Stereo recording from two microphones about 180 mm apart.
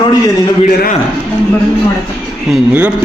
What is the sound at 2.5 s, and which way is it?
Speech, 10° right (ahead or behind).